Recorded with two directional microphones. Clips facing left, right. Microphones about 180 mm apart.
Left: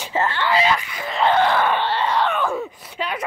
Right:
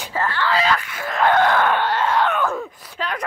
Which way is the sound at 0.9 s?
Centre (ahead or behind).